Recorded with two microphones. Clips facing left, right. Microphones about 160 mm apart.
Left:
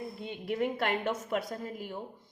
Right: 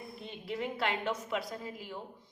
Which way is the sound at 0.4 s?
50° left (ahead or behind).